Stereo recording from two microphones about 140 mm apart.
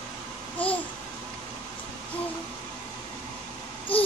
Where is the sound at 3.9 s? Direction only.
40° left (ahead or behind).